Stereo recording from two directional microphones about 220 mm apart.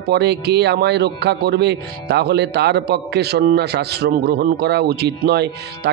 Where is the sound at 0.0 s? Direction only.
50° right (ahead or behind).